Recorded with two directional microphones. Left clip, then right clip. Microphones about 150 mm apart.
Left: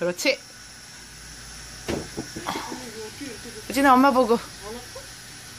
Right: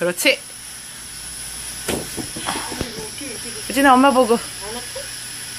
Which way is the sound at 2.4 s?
5° left (ahead or behind).